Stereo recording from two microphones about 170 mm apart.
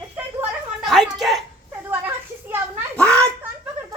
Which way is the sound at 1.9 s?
10° right (ahead or behind).